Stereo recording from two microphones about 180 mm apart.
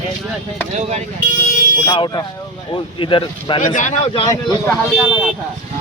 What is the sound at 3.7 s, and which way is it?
Speech, 40° left (ahead or behind).